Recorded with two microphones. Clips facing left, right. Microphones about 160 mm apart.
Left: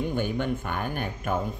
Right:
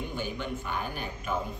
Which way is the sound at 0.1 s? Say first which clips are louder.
Left 7 dB; 55° left (ahead or behind).